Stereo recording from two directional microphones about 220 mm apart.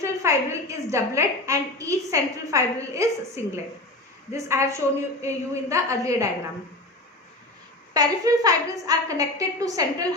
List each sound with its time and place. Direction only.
0.0 s a woman's voice: 15° right (ahead or behind)
7.9 s a woman's voice: 15° right (ahead or behind)